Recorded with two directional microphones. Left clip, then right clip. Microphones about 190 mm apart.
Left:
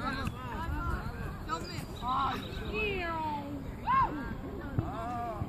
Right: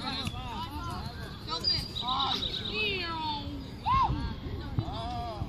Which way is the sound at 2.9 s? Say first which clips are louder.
Right 1 dB; 50° right (ahead or behind).